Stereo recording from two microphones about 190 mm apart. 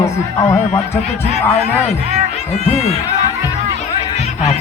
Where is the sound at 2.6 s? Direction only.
35° left (ahead or behind).